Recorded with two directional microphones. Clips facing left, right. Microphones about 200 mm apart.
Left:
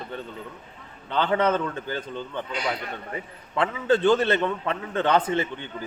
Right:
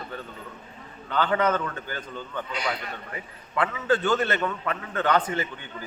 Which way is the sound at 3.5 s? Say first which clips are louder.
Left 2 dB; 30° left (ahead or behind).